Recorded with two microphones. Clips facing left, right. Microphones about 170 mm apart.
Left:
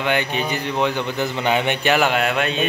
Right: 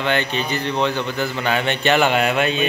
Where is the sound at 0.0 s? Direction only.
10° left (ahead or behind).